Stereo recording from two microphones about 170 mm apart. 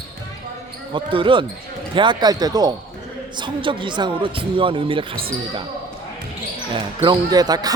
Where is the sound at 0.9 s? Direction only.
30° right (ahead or behind).